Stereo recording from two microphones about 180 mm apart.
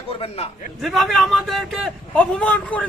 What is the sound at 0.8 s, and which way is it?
A man's voice, centre (ahead or behind).